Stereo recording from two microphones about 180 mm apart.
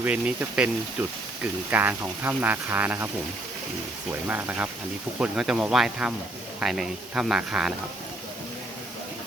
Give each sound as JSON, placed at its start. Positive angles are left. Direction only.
{"t": 0.0, "sound": "speech", "side_deg": -10}
{"t": 4.1, "sound": "speech", "side_deg": -10}